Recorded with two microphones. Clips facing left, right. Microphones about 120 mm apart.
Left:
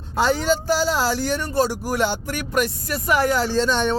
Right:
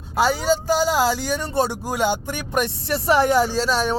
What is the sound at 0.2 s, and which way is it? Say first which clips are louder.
Speech: even; 10° right (ahead or behind).